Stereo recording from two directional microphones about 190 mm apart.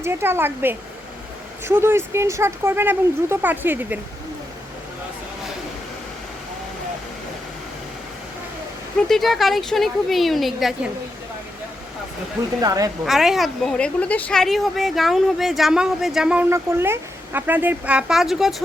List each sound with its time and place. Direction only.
0.0 s speech: 10° right (ahead or behind)
9.0 s a woman's voice: centre (ahead or behind)
12.6 s a woman's voice: 20° right (ahead or behind)
13.1 s a woman's voice: centre (ahead or behind)